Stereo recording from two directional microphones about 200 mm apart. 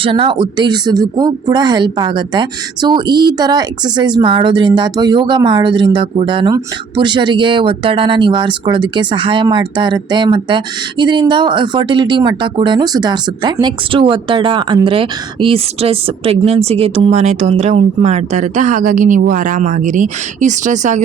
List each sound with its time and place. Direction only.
0.0 s speech: 25° right (ahead or behind)